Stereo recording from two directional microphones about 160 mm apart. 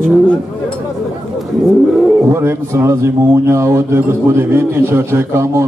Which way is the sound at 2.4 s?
15° right (ahead or behind).